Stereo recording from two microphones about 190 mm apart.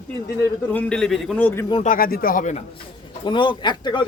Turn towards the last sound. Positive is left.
turn(degrees=25)  # may be behind; listen again after turning